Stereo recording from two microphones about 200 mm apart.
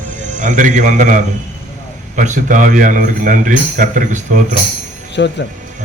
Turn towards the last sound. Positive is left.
turn(degrees=60)  # may be behind; listen again after turning